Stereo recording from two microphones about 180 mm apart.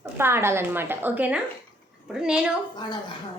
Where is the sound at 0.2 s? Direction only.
15° right (ahead or behind).